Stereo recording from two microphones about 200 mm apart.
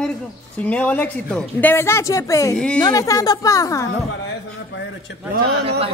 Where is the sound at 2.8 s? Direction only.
15° left (ahead or behind).